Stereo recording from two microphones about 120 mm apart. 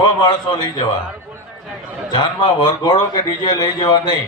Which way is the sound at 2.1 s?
35° left (ahead or behind).